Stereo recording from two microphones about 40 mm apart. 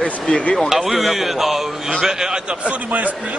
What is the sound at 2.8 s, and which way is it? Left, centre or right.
Speech, right.